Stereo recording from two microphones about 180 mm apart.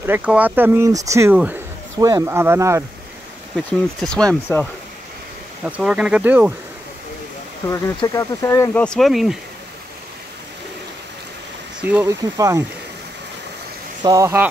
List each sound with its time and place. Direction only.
0.0 s speech: 10° right (ahead or behind)
3.5 s speech: 5° left (ahead or behind)
5.7 s speech: 5° right (ahead or behind)
8.0 s speech: 20° left (ahead or behind)
8.8 s speech: centre (ahead or behind)
11.8 s speech: 10° right (ahead or behind)
14.0 s speech: 20° right (ahead or behind)